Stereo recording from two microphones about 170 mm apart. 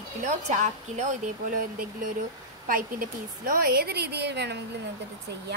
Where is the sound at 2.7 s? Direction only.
55° right (ahead or behind); by 4.6 s 80° right.